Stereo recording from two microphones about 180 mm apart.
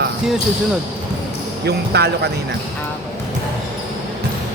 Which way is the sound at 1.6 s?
65° right (ahead or behind).